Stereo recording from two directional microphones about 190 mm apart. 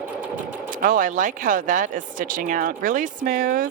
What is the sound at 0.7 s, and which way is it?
Speech, 45° right (ahead or behind).